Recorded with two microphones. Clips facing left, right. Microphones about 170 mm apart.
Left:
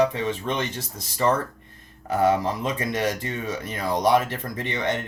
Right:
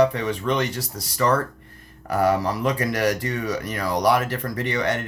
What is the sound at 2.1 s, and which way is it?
Speech, 20° left (ahead or behind).